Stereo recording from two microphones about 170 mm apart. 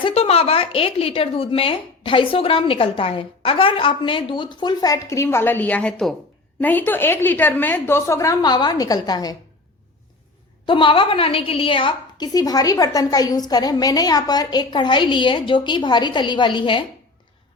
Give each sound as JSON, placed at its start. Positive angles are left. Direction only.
{"t": 0.0, "sound": "a woman's voice", "side_deg": 35}
{"t": 10.7, "sound": "a woman's voice", "side_deg": 30}